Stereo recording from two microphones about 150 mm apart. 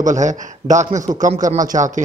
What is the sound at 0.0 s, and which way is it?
A man's voice, 55° right (ahead or behind).